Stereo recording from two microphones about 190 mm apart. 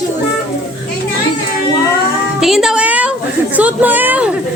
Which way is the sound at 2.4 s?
Centre (ahead or behind).